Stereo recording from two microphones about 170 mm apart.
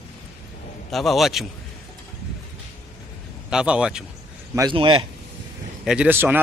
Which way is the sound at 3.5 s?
5° right (ahead or behind).